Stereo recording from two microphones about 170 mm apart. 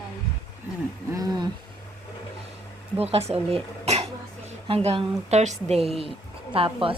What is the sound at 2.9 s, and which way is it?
Speech, 35° right (ahead or behind).